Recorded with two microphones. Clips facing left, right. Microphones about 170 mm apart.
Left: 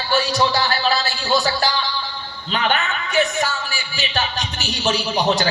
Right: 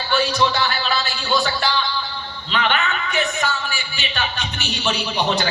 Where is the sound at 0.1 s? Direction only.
40° left (ahead or behind).